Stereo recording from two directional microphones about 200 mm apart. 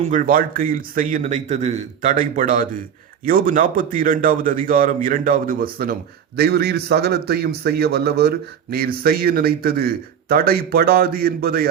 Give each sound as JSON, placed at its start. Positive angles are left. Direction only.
{"t": 0.0, "sound": "speech", "side_deg": -40}